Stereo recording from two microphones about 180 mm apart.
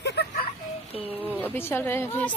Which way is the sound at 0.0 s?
65° left (ahead or behind).